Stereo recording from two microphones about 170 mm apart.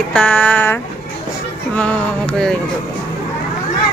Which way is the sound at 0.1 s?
5° left (ahead or behind).